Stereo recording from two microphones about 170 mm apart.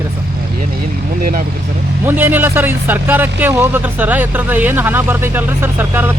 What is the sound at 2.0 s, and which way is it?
Speech, 10° right (ahead or behind).